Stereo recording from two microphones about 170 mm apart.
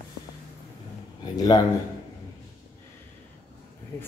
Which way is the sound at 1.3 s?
25° left (ahead or behind).